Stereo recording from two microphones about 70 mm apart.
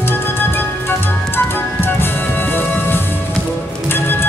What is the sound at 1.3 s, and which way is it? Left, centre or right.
Ice cream truck, left.